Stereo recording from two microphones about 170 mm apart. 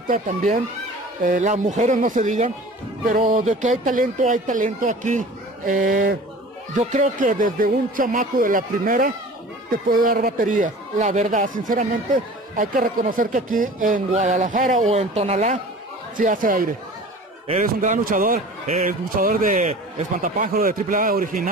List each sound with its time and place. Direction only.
0.1 s speech: 50° right (ahead or behind)